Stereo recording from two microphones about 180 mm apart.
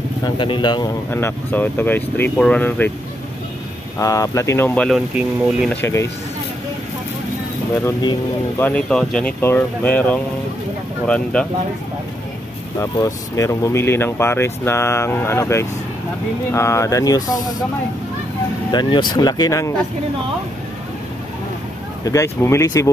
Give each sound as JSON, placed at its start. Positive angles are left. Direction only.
{"t": 0.2, "sound": "speech", "side_deg": 25}
{"t": 1.1, "sound": "speech", "side_deg": 10}
{"t": 4.0, "sound": "speech", "side_deg": 20}
{"t": 5.8, "sound": "speech", "side_deg": 15}
{"t": 7.8, "sound": "speech", "side_deg": 25}
{"t": 8.5, "sound": "speech", "side_deg": 10}
{"t": 12.7, "sound": "speech", "side_deg": 15}
{"t": 18.7, "sound": "speech", "side_deg": 25}
{"t": 22.0, "sound": "speech", "side_deg": 15}